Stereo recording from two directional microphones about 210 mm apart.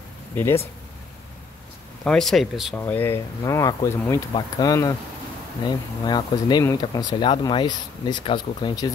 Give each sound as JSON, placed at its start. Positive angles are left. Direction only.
{"t": 2.0, "sound": "speech", "side_deg": 0}
{"t": 2.8, "sound": "speech", "side_deg": 10}